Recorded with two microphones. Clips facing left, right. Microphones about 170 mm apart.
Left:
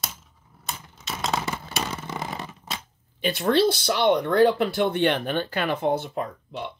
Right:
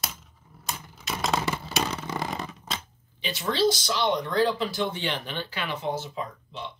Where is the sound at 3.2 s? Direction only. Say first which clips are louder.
Left 4 dB; 55° left (ahead or behind).